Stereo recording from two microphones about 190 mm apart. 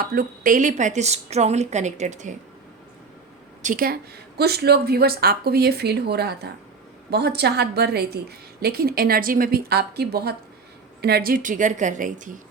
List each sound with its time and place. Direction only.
0.0 s a woman's voice: 55° right (ahead or behind)
3.6 s a woman's voice: 45° right (ahead or behind)
4.4 s a woman's voice: 55° right (ahead or behind)